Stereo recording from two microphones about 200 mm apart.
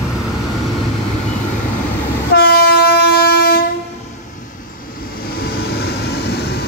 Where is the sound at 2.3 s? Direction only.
50° left (ahead or behind).